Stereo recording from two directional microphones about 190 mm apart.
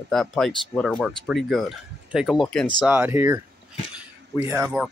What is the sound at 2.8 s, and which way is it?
Speech, 10° right (ahead or behind).